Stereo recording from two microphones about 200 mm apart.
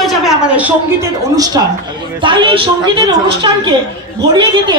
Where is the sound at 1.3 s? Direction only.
20° right (ahead or behind).